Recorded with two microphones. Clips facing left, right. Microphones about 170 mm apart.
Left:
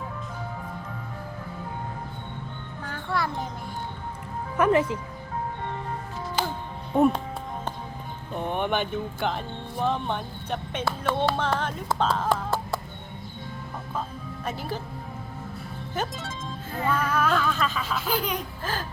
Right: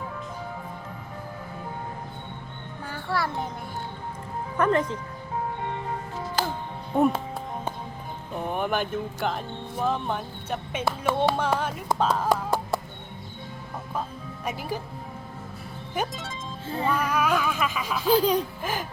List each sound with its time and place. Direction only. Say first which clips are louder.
2.9 s music: even; 5° right (ahead or behind)
4.5 s speech: left 2 dB; 10° left (ahead or behind)
6.9 s speech: left 1 dB; centre (ahead or behind)
8.4 s speech: even; 5° right (ahead or behind)
14.4 s speech: right 1 dB; 10° right (ahead or behind)
16.1 s speech: even; centre (ahead or behind)
16.6 s music: right 2 dB; 25° right (ahead or behind)
16.9 s speech: left 1 dB; 15° right (ahead or behind)
18.1 s speech: right 9 dB; 30° right (ahead or behind)
18.6 s speech: right 1 dB; 15° right (ahead or behind)